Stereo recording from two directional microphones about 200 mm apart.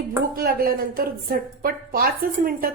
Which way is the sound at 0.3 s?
45° right (ahead or behind).